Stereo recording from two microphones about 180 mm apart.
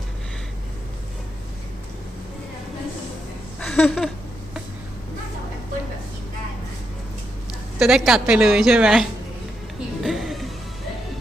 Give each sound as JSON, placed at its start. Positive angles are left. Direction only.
{"t": 3.6, "sound": "a sound", "side_deg": 5}
{"t": 7.8, "sound": "a woman's voice", "side_deg": 0}
{"t": 10.0, "sound": "music", "side_deg": 0}